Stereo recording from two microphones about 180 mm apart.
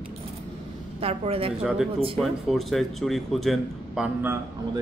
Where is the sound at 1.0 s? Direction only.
35° right (ahead or behind).